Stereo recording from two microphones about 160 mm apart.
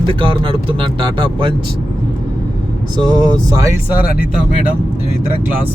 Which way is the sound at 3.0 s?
25° right (ahead or behind).